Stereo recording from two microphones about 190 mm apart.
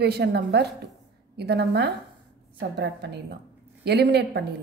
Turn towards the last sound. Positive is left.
turn(degrees=-60)  # may be behind; listen again after turning